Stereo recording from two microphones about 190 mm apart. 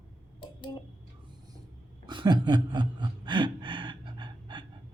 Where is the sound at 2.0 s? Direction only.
25° right (ahead or behind).